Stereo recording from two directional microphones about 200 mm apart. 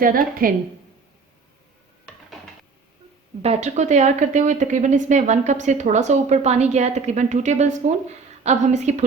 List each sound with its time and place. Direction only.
0.0 s a woman's voice: 45° right (ahead or behind)
3.4 s speech: 30° right (ahead or behind)